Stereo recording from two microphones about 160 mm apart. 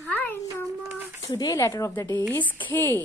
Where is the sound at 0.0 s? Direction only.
10° left (ahead or behind).